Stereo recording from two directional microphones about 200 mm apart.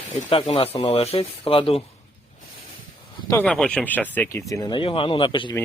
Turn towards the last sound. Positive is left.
turn(degrees=25)  # may be behind; listen again after turning